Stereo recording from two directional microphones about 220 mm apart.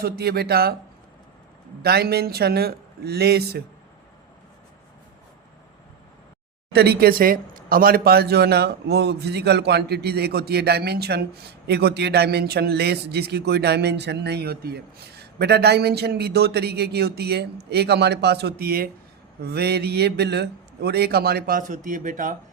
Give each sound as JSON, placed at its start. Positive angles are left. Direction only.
{"t": 0.0, "sound": "a man's voice", "side_deg": -45}
{"t": 1.8, "sound": "a man's voice", "side_deg": -45}
{"t": 6.7, "sound": "a man's voice", "side_deg": -45}